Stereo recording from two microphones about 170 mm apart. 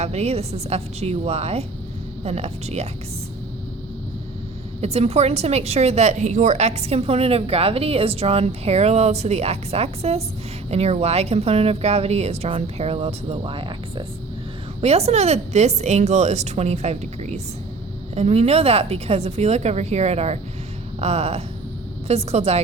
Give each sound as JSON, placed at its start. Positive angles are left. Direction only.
{"t": 0.0, "sound": "a woman's voice", "side_deg": -40}
{"t": 4.8, "sound": "a woman's voice", "side_deg": -35}
{"t": 14.8, "sound": "a woman's voice", "side_deg": -40}